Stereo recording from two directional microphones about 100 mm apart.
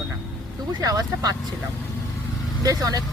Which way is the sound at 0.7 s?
40° right (ahead or behind).